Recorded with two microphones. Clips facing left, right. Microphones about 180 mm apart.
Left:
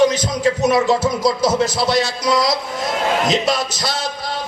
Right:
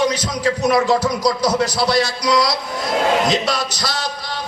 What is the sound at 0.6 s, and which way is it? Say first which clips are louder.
Music: right 1 dB; 20° left (ahead or behind).